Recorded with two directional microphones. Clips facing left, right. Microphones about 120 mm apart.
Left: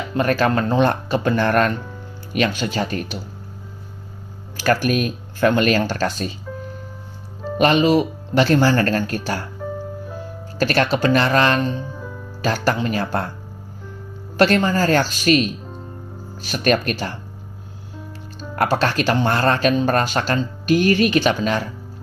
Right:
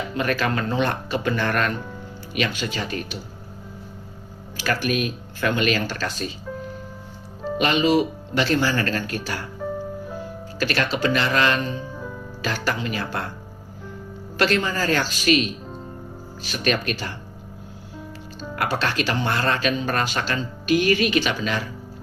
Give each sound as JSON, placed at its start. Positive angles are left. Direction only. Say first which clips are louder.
{"t": 0.2, "sound": "speech", "louder": "left 6 dB", "side_deg": 40}
{"t": 4.6, "sound": "speech", "louder": "left 5 dB", "side_deg": 45}
{"t": 6.5, "sound": "music", "louder": "even", "side_deg": 0}
{"t": 7.6, "sound": "speech", "louder": "left 4 dB", "side_deg": 40}
{"t": 9.6, "sound": "music", "louder": "even", "side_deg": 0}
{"t": 10.6, "sound": "speech", "louder": "left 5 dB", "side_deg": 45}
{"t": 11.9, "sound": "music", "louder": "even", "side_deg": 0}
{"t": 12.4, "sound": "speech", "louder": "left 6 dB", "side_deg": 40}
{"t": 14.3, "sound": "speech", "louder": "left 5 dB", "side_deg": 40}
{"t": 18.5, "sound": "speech", "louder": "left 5 dB", "side_deg": 40}